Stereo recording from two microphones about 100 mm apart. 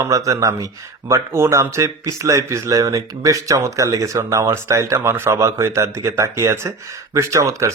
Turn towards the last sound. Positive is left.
turn(degrees=-30)  # may be behind; listen again after turning